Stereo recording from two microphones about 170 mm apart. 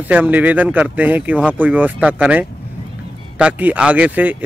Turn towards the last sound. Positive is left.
turn(degrees=-10)  # may be behind; listen again after turning